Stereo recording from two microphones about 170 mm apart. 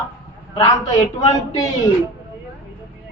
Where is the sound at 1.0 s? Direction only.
40° left (ahead or behind).